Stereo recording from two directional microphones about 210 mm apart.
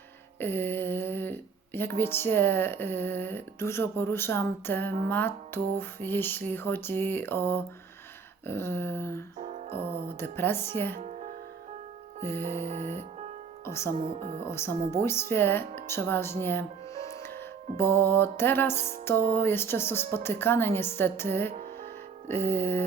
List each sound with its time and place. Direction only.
0.3 s speech: 10° left (ahead or behind)
9.4 s music: 35° right (ahead or behind)
9.7 s speech: 10° left (ahead or behind)
11.0 s music: 35° right (ahead or behind)
12.5 s music: 30° right (ahead or behind)
13.7 s speech: 10° left (ahead or behind)
14.2 s speech: 30° right (ahead or behind)
14.4 s speech: 10° left (ahead or behind)
17.2 s music: 10° left (ahead or behind)
19.3 s speech: 10° left (ahead or behind)